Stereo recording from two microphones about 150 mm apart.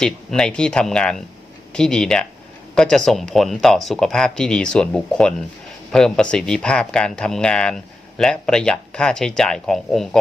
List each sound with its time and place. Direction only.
0.0 s speech: 5° left (ahead or behind)